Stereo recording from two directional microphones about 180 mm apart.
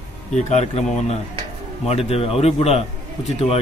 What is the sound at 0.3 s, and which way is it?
A man's voice, 40° left (ahead or behind).